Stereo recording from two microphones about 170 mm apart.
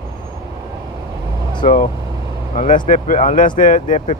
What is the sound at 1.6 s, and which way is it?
Speech, 50° left (ahead or behind).